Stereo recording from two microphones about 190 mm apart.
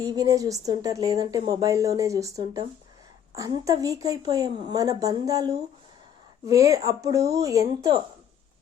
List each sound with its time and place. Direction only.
0.0 s a woman's voice: 20° right (ahead or behind)